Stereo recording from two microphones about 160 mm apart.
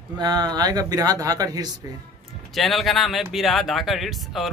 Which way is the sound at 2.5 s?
Centre (ahead or behind).